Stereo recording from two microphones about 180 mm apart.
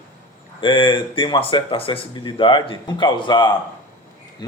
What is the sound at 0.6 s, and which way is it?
Speech, 25° left (ahead or behind).